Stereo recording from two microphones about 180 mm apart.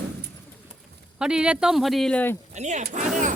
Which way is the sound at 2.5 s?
40° right (ahead or behind).